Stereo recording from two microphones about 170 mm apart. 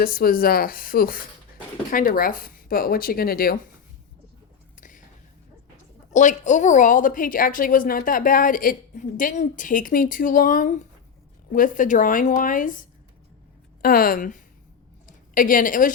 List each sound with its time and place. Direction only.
0.0 s speech: 60° left (ahead or behind)
4.8 s a sound: 50° left (ahead or behind)
6.1 s a woman's voice: 45° left (ahead or behind)